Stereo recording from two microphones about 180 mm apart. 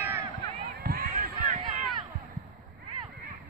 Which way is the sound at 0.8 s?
55° right (ahead or behind).